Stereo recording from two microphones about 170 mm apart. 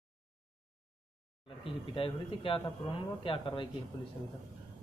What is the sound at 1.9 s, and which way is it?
Speech, 30° left (ahead or behind).